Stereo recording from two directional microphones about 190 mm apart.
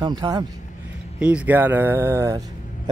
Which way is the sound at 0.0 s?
20° right (ahead or behind).